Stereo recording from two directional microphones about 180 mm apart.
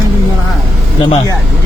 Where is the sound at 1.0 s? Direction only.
30° left (ahead or behind).